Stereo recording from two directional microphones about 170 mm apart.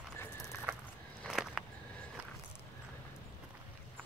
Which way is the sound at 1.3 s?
5° right (ahead or behind).